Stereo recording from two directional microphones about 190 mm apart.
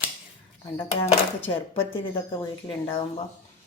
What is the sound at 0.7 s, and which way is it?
Speech, 30° left (ahead or behind).